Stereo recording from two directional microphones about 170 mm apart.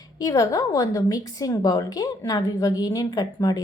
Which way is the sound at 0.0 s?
20° left (ahead or behind).